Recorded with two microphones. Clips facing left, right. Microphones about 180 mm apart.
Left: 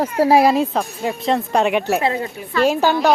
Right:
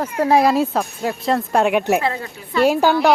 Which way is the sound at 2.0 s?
20° left (ahead or behind).